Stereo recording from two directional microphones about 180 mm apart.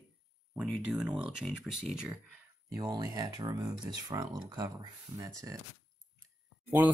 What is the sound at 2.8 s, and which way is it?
Speech, 20° right (ahead or behind).